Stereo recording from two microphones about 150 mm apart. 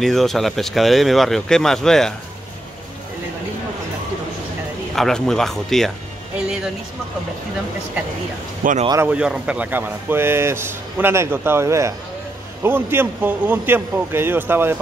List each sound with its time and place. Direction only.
0.0 s speech: centre (ahead or behind)
4.9 s speech: 5° left (ahead or behind)
8.6 s speech: 65° right (ahead or behind)
9.0 s speech: 5° right (ahead or behind)